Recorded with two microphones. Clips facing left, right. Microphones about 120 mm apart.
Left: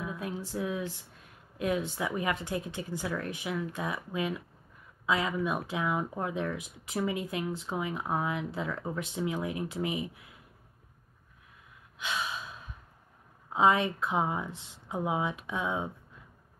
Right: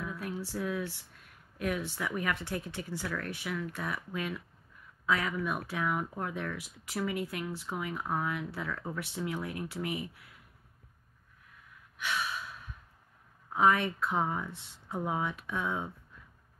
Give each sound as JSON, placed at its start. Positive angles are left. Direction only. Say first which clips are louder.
{"t": 0.0, "sound": "a sound", "louder": "left 1 dB", "side_deg": 20}
{"t": 1.6, "sound": "speech", "louder": "left 3 dB", "side_deg": 20}
{"t": 12.0, "sound": "gasp", "louder": "even", "side_deg": 20}
{"t": 13.5, "sound": "speech", "louder": "left 2 dB", "side_deg": 20}